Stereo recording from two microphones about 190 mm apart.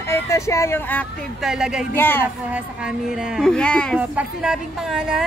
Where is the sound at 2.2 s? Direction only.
5° right (ahead or behind).